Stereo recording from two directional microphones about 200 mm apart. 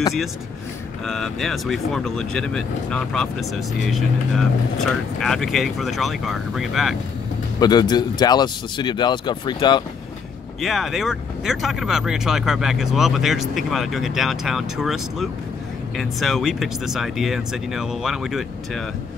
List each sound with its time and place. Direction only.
1.0 s speech: centre (ahead or behind)
7.6 s speech: 20° left (ahead or behind)
10.6 s speech: centre (ahead or behind)